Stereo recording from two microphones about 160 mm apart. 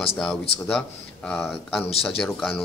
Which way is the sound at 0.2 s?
5° left (ahead or behind).